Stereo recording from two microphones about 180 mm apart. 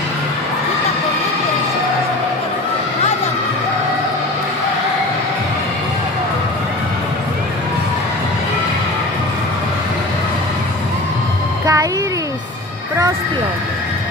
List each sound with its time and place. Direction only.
11.6 s music: 20° right (ahead or behind)